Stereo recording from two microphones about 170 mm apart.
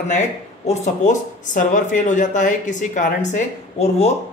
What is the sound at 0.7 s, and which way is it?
Speech, 45° left (ahead or behind).